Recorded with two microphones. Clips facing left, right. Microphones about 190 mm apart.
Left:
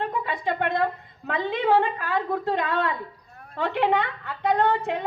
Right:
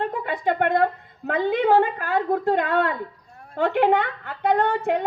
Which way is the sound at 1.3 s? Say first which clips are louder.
Right 3 dB; 50° right (ahead or behind).